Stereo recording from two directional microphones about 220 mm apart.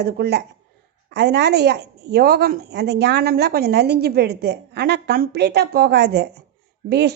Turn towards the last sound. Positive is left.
turn(degrees=-50)  # may be behind; listen again after turning